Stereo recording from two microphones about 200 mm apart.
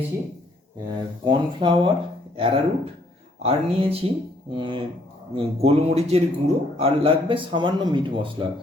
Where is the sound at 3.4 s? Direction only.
30° right (ahead or behind).